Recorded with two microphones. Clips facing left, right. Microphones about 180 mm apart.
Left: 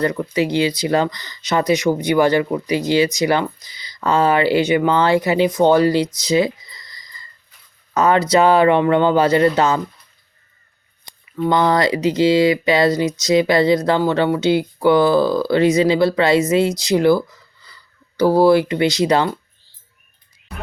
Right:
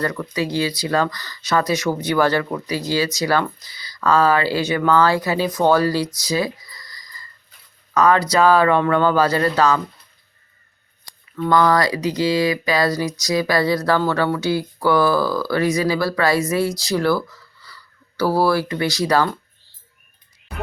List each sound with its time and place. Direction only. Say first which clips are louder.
0.0 s speech: left 4 dB; 20° left (ahead or behind)
6.1 s a sound: left 5 dB; 20° left (ahead or behind)
7.9 s speech: left 2 dB; 25° left (ahead or behind)
11.0 s speech: left 4 dB; 20° left (ahead or behind)